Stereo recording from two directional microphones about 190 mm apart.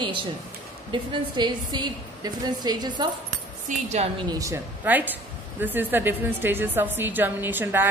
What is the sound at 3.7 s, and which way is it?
Speech, 35° right (ahead or behind).